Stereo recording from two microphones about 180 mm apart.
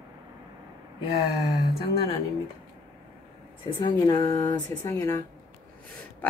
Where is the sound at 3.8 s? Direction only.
20° left (ahead or behind).